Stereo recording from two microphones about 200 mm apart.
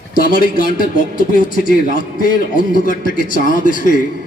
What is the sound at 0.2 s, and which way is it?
A man's voice, 45° left (ahead or behind).